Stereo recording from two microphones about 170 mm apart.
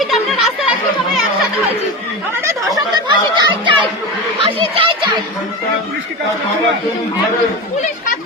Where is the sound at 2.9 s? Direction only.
25° right (ahead or behind).